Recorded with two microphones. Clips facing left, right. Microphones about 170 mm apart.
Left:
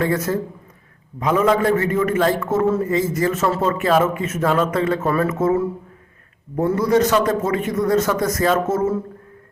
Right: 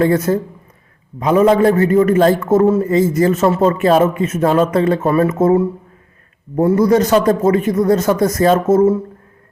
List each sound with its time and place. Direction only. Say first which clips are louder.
0.0 s a man's voice: right 6 dB; 30° right (ahead or behind)